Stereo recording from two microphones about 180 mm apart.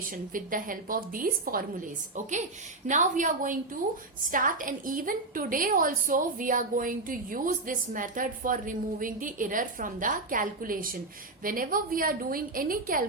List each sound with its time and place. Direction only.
0.0 s a woman's voice: 50° right (ahead or behind)
2.8 s a woman's voice: 45° right (ahead or behind)